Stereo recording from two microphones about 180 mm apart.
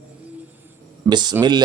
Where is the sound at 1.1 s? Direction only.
25° right (ahead or behind).